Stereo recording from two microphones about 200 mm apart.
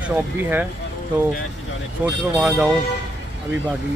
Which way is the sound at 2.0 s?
10° right (ahead or behind).